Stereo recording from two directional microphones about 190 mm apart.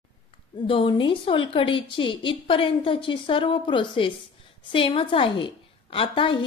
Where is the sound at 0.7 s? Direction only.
25° left (ahead or behind).